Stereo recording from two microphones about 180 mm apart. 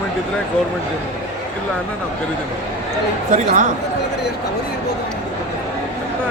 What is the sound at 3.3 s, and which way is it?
Speech, 45° right (ahead or behind).